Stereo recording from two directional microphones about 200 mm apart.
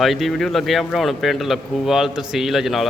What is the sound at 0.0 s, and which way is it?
A man's voice, centre (ahead or behind).